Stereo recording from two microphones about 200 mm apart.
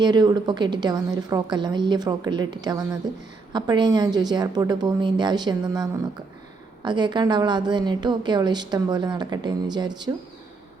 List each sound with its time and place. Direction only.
0.0 s a woman's voice: 20° right (ahead or behind)